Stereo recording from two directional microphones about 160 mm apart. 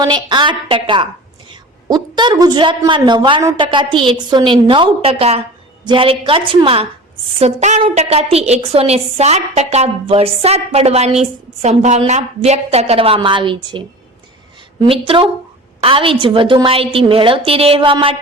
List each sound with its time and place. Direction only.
0.0 s a woman's voice: 30° right (ahead or behind)
7.3 s a woman's voice: 45° right (ahead or behind)
14.8 s a woman's voice: 35° right (ahead or behind)